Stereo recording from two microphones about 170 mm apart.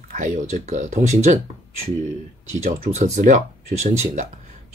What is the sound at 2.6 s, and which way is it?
Speech, 40° right (ahead or behind).